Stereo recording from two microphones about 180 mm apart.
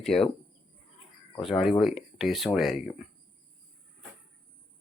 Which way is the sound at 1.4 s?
Centre (ahead or behind).